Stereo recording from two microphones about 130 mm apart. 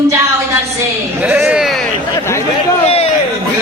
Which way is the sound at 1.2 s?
10° right (ahead or behind).